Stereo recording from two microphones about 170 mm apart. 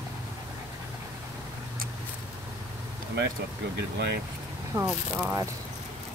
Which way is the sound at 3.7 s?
75° right (ahead or behind).